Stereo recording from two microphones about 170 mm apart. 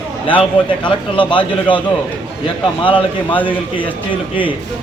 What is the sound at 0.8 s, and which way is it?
A man's voice, 30° left (ahead or behind).